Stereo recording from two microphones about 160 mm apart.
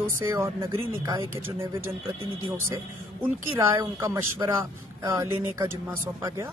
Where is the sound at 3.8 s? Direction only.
15° right (ahead or behind).